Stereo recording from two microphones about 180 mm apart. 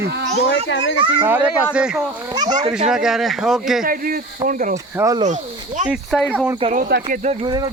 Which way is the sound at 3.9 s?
50° right (ahead or behind).